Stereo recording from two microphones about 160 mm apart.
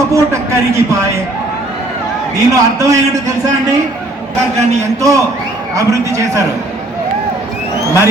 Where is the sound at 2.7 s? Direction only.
20° right (ahead or behind).